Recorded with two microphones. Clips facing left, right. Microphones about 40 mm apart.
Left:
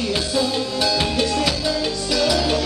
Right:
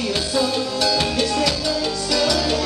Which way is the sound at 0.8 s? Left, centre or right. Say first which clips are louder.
Even; centre.